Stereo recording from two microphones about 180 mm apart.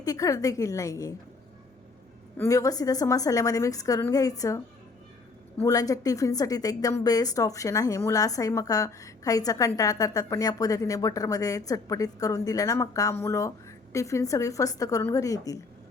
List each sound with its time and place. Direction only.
0.0 s a woman's voice: 20° left (ahead or behind)
2.4 s a woman's voice: 20° left (ahead or behind)
5.6 s a woman's voice: 20° left (ahead or behind)